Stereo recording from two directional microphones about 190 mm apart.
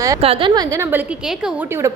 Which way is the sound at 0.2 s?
30° right (ahead or behind).